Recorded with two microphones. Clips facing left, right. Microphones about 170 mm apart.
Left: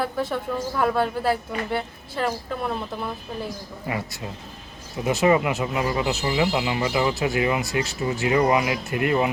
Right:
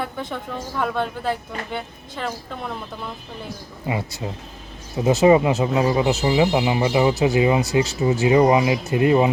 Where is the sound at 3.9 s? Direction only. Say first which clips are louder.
Right 4 dB; 20° right (ahead or behind).